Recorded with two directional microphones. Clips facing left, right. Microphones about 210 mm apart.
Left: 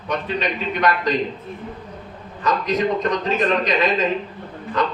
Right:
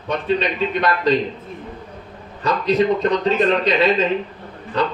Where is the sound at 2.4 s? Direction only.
30° right (ahead or behind).